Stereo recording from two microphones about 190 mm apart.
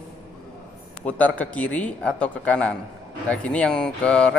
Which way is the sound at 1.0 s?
5° left (ahead or behind).